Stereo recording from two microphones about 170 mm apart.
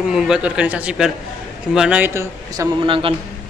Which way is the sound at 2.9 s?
30° right (ahead or behind).